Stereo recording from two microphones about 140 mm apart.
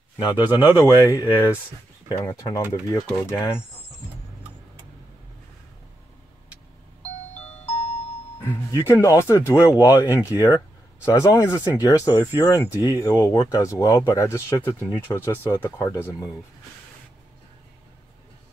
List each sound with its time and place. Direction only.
0.2 s a man's voice: 15° right (ahead or behind)
0.7 s speech: 25° left (ahead or behind)
7.6 s music: 50° left (ahead or behind)
8.4 s speech: 20° left (ahead or behind)